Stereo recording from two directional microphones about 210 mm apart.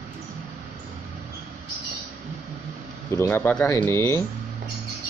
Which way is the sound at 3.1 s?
10° left (ahead or behind).